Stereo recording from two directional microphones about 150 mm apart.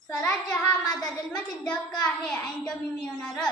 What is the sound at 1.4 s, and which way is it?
A woman's voice, 5° left (ahead or behind).